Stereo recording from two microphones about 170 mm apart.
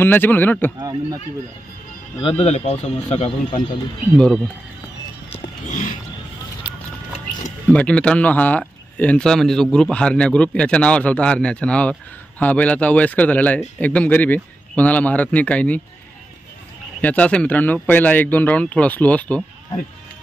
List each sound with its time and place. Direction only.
0.0 s speech: 10° left (ahead or behind)
0.7 s speech: 20° right (ahead or behind)
2.1 s speech: 30° left (ahead or behind)
5.3 s a sound: 45° left (ahead or behind)
7.7 s speech: 5° left (ahead or behind)
17.0 s speech: 10° left (ahead or behind)